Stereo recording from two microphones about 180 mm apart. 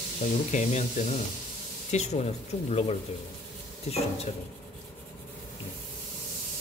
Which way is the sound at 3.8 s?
35° left (ahead or behind).